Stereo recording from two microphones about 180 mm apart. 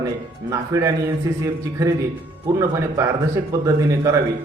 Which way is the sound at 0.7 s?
15° right (ahead or behind).